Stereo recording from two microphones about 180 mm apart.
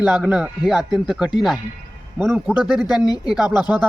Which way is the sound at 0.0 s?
5° right (ahead or behind).